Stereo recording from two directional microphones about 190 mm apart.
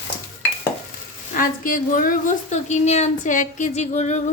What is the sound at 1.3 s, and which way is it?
A woman's voice, 45° left (ahead or behind).